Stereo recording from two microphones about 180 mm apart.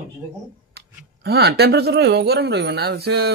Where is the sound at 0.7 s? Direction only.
65° right (ahead or behind).